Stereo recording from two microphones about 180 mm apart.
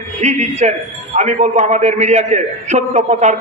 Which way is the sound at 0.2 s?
40° right (ahead or behind).